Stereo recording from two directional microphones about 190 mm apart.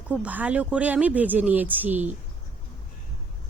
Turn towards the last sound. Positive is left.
turn(degrees=-10)  # may be behind; listen again after turning